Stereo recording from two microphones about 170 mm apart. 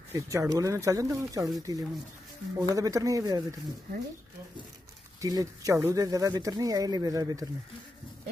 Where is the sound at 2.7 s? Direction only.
20° right (ahead or behind).